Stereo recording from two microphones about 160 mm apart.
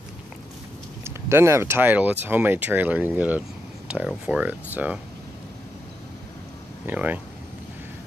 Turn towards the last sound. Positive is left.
turn(degrees=-10)  # may be behind; listen again after turning